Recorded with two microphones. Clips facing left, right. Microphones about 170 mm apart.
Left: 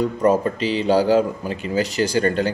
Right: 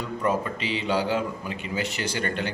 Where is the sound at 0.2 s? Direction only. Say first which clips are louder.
Left 7 dB; 40° left (ahead or behind).